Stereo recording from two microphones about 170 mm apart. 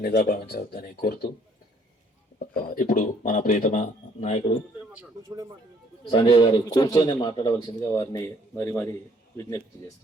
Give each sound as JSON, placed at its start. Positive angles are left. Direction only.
{"t": 0.3, "sound": "speech", "side_deg": 65}
{"t": 2.5, "sound": "speech", "side_deg": 55}
{"t": 4.9, "sound": "speech", "side_deg": -20}
{"t": 6.1, "sound": "a man's voice", "side_deg": 30}